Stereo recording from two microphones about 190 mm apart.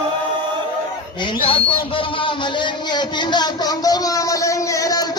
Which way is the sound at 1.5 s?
30° left (ahead or behind).